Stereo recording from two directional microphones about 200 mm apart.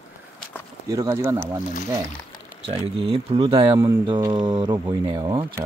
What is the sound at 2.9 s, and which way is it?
Speech, 30° right (ahead or behind).